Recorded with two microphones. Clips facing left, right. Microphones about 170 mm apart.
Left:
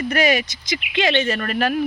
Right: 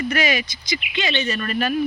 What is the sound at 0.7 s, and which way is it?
Speech, 65° left (ahead or behind).